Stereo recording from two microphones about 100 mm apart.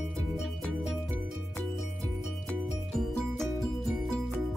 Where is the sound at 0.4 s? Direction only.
5° right (ahead or behind).